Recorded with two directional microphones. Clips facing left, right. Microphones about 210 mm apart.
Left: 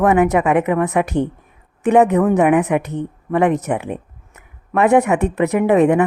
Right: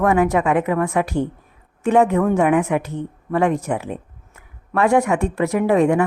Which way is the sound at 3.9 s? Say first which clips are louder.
Left 3 dB; 20° left (ahead or behind).